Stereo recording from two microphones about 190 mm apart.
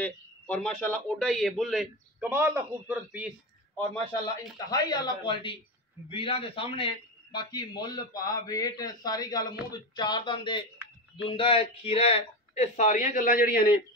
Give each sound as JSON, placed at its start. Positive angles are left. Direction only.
{"t": 0.0, "sound": "speech", "side_deg": 5}
{"t": 2.2, "sound": "a man's voice", "side_deg": -10}
{"t": 4.6, "sound": "a man's voice", "side_deg": 20}